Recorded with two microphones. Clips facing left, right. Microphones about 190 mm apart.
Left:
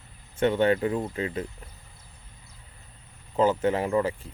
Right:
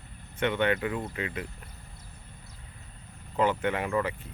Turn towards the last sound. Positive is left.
turn(degrees=25)  # may be behind; listen again after turning